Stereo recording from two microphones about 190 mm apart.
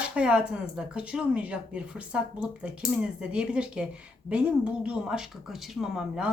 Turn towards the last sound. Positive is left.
turn(degrees=-5)  # may be behind; listen again after turning